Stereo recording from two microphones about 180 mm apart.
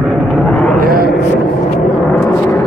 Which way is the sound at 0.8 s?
55° right (ahead or behind).